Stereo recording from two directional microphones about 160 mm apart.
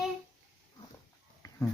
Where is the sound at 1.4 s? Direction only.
25° left (ahead or behind).